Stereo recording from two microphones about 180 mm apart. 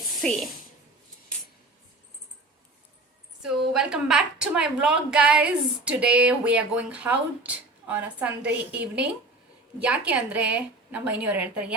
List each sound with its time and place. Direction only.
0.2 s speech: centre (ahead or behind)
3.4 s a woman's voice: 5° right (ahead or behind)